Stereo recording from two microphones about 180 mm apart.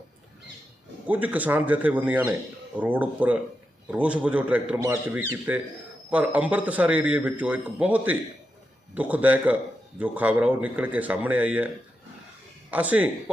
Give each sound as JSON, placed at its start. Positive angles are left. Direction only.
{"t": 1.0, "sound": "a man's voice", "side_deg": -10}
{"t": 12.7, "sound": "a man's voice", "side_deg": -10}